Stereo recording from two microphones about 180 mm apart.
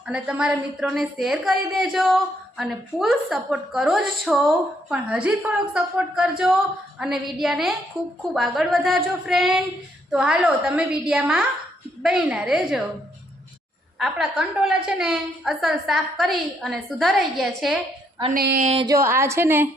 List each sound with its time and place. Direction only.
0.0 s a woman's voice: 5° right (ahead or behind)
14.0 s a woman's voice: centre (ahead or behind)
18.3 s a sound: 60° right (ahead or behind)
18.6 s speech: 35° right (ahead or behind)
18.9 s a woman's voice: 15° right (ahead or behind)